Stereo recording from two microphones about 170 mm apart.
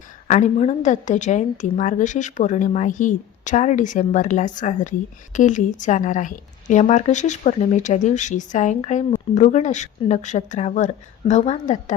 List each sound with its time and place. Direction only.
0.3 s a woman's voice: 45° left (ahead or behind)